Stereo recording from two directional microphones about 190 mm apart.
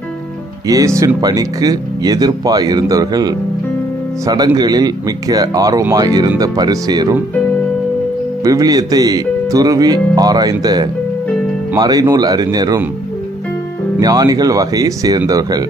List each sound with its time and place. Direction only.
0.7 s speech: 15° right (ahead or behind)
8.5 s speech: 20° right (ahead or behind)
13.9 s speech: 20° right (ahead or behind)